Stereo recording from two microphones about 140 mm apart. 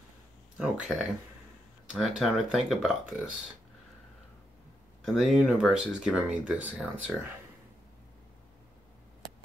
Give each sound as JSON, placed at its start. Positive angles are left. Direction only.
{"t": 0.6, "sound": "speech", "side_deg": -5}
{"t": 5.0, "sound": "speech", "side_deg": 0}